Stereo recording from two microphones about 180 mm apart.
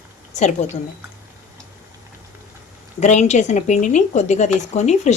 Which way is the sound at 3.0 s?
40° left (ahead or behind).